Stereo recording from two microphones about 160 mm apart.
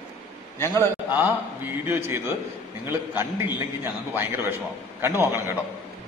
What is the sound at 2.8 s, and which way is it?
A man's voice, 15° right (ahead or behind).